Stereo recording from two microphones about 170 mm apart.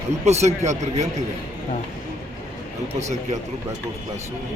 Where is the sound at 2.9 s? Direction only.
40° right (ahead or behind).